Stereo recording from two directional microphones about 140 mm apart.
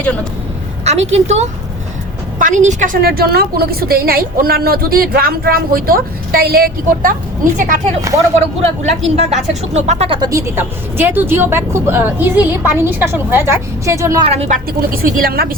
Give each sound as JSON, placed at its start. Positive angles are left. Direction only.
{"t": 0.9, "sound": "speech", "side_deg": -50}
{"t": 2.4, "sound": "a woman's voice", "side_deg": -65}
{"t": 8.4, "sound": "speech", "side_deg": -50}
{"t": 10.1, "sound": "speech", "side_deg": -25}
{"t": 14.3, "sound": "speech", "side_deg": -45}
{"t": 14.8, "sound": "a woman's voice", "side_deg": -85}